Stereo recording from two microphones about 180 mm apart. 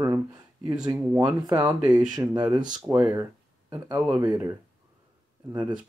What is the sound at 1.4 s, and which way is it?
Speech, 25° right (ahead or behind).